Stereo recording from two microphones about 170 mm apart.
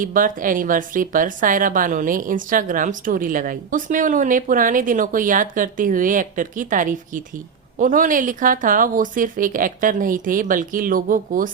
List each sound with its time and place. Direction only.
0.0 s speech: 55° right (ahead or behind)